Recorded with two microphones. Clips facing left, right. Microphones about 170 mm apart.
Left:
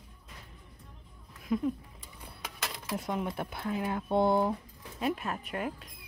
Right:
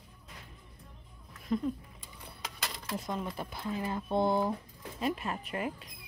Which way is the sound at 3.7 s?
10° left (ahead or behind).